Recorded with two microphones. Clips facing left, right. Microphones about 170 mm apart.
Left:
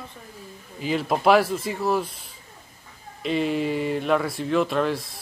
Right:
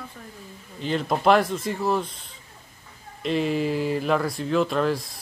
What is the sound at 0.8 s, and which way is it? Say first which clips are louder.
Speech: left 1 dB; 5° left (ahead or behind).